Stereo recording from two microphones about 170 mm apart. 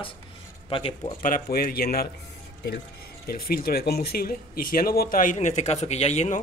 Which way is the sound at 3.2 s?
60° left (ahead or behind).